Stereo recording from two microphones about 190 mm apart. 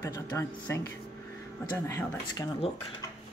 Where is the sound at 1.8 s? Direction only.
15° left (ahead or behind).